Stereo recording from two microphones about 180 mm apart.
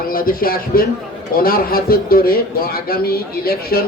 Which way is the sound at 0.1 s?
55° left (ahead or behind).